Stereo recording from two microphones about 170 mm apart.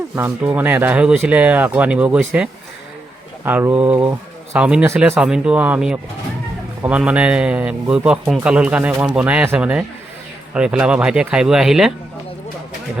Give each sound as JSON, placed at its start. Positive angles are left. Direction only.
{"t": 0.2, "sound": "speech", "side_deg": -10}